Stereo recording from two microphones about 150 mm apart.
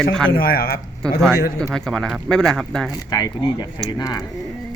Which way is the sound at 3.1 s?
25° left (ahead or behind).